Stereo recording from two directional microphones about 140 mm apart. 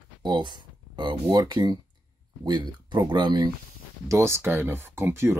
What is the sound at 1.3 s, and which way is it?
Speech, 30° right (ahead or behind).